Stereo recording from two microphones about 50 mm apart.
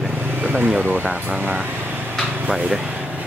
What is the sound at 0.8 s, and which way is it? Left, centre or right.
Speech, right.